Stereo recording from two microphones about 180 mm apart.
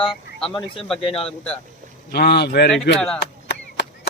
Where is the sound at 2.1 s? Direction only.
65° left (ahead or behind).